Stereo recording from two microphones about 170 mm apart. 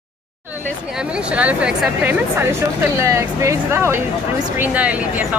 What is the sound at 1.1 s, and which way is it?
Speech, 10° right (ahead or behind).